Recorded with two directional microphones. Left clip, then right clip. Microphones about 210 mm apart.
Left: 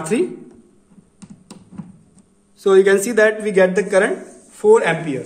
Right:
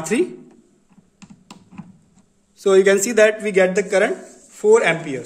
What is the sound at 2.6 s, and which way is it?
Speech, 40° right (ahead or behind).